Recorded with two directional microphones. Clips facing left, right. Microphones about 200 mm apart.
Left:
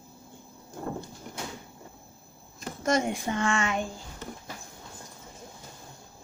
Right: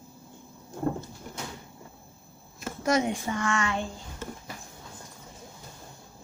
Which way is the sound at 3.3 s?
25° left (ahead or behind).